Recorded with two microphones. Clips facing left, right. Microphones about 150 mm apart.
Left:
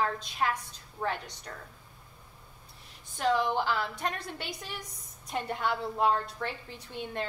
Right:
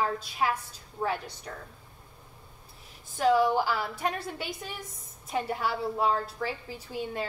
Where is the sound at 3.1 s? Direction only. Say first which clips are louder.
Right 4 dB; 5° right (ahead or behind).